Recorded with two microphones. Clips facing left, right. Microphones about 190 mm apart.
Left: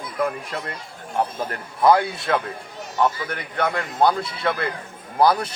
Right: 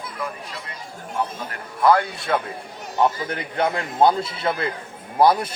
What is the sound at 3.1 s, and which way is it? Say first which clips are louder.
A man's voice: right 2 dB; 30° right (ahead or behind).